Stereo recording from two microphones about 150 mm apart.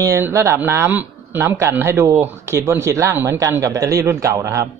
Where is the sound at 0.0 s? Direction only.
20° right (ahead or behind).